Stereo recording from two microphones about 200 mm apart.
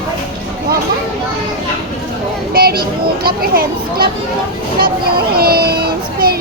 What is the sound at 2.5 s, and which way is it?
A child's voice, 50° right (ahead or behind).